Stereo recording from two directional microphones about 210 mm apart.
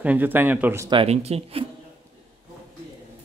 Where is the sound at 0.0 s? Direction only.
10° right (ahead or behind).